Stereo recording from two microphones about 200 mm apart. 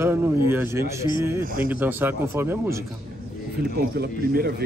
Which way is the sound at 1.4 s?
45° right (ahead or behind).